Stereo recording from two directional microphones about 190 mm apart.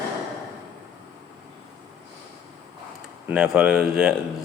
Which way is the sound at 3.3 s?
5° right (ahead or behind).